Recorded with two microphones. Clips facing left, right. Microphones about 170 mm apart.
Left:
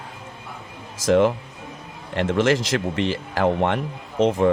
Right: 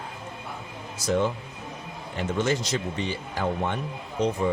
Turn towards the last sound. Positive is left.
turn(degrees=90)